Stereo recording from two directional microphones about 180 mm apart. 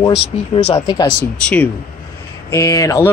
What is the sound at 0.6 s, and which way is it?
Speech, 35° left (ahead or behind).